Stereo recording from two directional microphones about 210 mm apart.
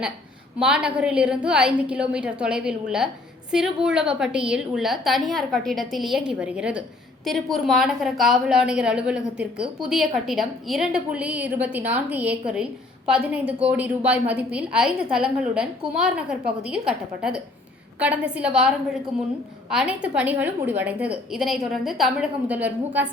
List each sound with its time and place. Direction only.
0.6 s a woman's voice: 5° right (ahead or behind)
19.7 s a woman's voice: 5° right (ahead or behind)